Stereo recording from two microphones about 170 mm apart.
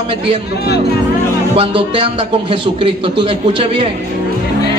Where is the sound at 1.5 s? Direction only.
30° right (ahead or behind).